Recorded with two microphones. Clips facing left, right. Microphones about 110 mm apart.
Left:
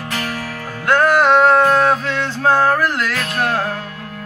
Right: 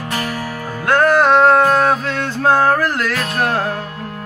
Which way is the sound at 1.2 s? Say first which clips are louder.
Even; centre (ahead or behind).